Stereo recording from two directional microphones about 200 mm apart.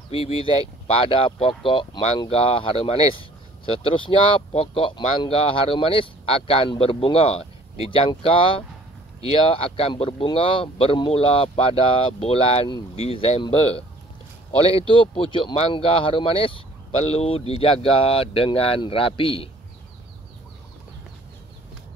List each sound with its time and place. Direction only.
0.1 s speech: 25° left (ahead or behind)